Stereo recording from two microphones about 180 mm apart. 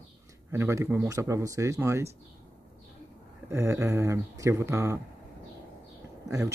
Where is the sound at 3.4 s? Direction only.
15° right (ahead or behind).